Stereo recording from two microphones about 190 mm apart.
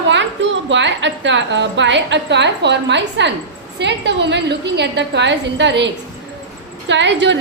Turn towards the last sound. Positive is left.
turn(degrees=-70)  # may be behind; listen again after turning